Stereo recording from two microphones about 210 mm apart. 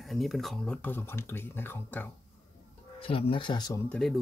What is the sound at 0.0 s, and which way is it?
Speech, centre (ahead or behind).